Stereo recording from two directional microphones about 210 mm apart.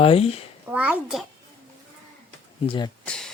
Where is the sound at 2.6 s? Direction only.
25° left (ahead or behind).